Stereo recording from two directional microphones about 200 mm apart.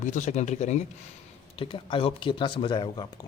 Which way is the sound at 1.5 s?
25° left (ahead or behind).